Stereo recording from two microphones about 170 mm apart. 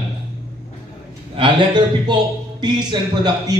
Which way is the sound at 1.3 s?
30° right (ahead or behind).